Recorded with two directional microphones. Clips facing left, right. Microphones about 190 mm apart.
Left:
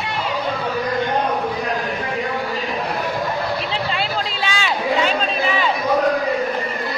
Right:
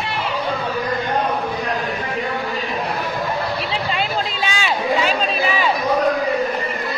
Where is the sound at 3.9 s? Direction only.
15° right (ahead or behind).